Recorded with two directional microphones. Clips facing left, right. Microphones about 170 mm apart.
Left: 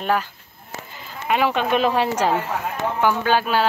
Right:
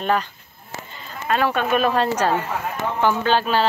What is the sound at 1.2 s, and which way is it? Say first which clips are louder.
Speech: even; 15° left (ahead or behind).